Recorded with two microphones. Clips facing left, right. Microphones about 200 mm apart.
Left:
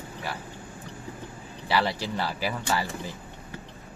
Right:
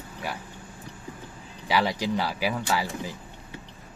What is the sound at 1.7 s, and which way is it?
Speech, 15° right (ahead or behind).